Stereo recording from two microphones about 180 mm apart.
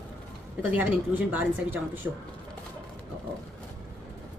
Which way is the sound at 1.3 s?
10° right (ahead or behind).